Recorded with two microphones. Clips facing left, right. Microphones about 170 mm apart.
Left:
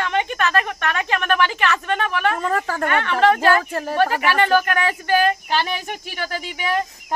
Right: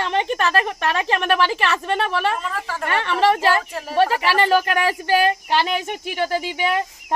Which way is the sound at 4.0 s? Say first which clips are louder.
Right 1 dB; 30° right (ahead or behind).